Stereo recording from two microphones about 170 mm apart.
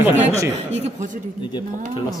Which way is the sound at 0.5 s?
45° right (ahead or behind).